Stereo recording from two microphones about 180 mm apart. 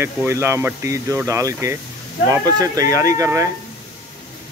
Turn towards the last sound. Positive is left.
turn(degrees=-15)  # may be behind; listen again after turning